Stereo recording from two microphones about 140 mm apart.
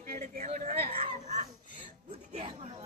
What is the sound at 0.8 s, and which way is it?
Baby cry, 40° right (ahead or behind).